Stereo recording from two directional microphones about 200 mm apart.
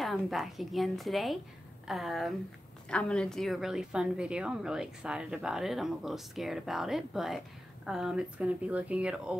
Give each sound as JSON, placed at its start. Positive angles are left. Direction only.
{"t": 0.0, "sound": "a woman's voice", "side_deg": 0}